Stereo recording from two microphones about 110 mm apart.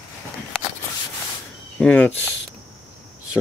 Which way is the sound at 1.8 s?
15° left (ahead or behind).